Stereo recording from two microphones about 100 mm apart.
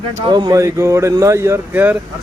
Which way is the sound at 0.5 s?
30° right (ahead or behind).